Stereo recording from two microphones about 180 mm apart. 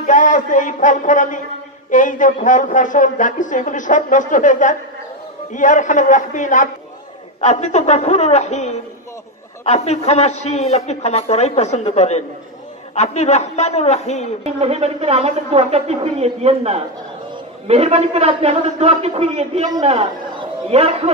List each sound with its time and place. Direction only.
0.0 s a sound: 45° left (ahead or behind)
1.9 s a man's voice: 45° left (ahead or behind)
14.4 s a man's voice: 35° right (ahead or behind)